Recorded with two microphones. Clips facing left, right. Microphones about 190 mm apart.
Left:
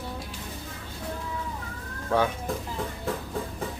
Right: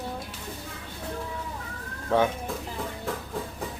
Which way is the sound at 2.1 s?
20° right (ahead or behind).